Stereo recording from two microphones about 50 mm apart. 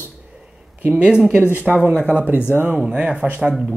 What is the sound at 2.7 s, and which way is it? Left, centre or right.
Speech, right.